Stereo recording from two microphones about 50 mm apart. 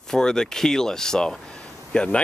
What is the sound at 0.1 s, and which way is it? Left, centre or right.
Speech, centre.